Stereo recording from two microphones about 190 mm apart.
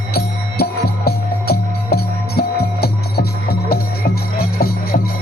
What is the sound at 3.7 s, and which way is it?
Music, 55° left (ahead or behind).